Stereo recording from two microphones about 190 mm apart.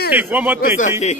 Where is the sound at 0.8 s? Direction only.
35° left (ahead or behind).